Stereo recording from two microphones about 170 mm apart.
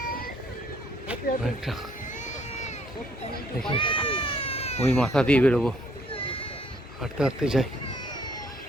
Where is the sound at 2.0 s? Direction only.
45° left (ahead or behind).